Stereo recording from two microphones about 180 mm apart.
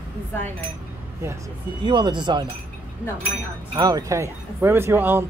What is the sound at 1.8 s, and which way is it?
Speech, 25° right (ahead or behind).